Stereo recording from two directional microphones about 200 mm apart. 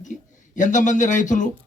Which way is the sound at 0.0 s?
40° left (ahead or behind).